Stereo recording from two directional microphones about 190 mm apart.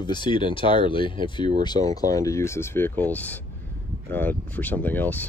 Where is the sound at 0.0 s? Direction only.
25° left (ahead or behind).